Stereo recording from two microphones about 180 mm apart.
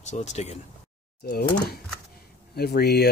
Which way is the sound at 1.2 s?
60° left (ahead or behind).